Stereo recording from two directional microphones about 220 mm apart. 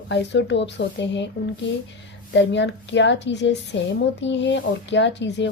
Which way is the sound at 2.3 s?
55° left (ahead or behind).